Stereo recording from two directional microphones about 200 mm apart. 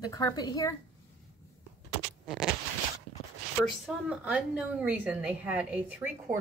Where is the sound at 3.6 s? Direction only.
Centre (ahead or behind).